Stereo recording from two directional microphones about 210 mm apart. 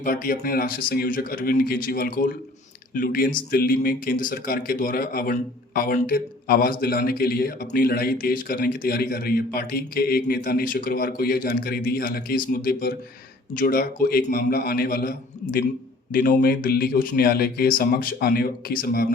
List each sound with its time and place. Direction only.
0.0 s speech: 45° left (ahead or behind)
16.1 s speech: 45° left (ahead or behind)